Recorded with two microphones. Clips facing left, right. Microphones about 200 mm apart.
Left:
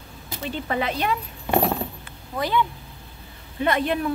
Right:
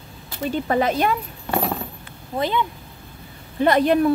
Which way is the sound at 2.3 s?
20° right (ahead or behind).